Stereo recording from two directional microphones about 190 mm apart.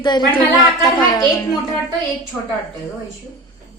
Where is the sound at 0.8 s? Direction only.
20° left (ahead or behind).